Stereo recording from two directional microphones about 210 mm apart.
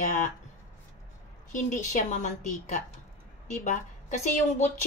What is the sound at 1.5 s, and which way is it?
A woman's voice, 35° left (ahead or behind).